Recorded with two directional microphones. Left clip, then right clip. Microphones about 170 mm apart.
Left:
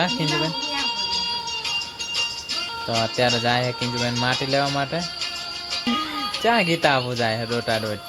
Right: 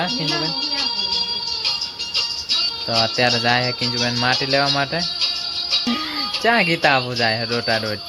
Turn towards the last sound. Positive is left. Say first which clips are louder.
# right 3 dB
turn(degrees=15)  # may be behind; listen again after turning